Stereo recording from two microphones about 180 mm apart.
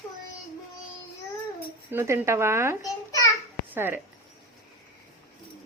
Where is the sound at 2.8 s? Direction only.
20° left (ahead or behind).